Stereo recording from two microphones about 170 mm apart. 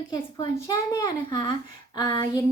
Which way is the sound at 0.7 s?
20° left (ahead or behind).